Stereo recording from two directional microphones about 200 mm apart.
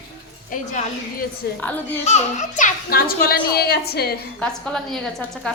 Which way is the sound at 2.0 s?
35° left (ahead or behind).